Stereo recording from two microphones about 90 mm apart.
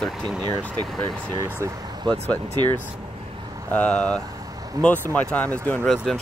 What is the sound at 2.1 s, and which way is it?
Speech, 55° right (ahead or behind).